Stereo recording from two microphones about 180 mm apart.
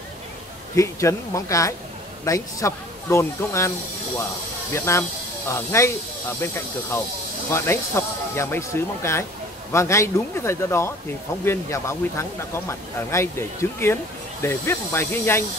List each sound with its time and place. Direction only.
0.7 s speech: 15° left (ahead or behind)
4.7 s speech: 15° left (ahead or behind)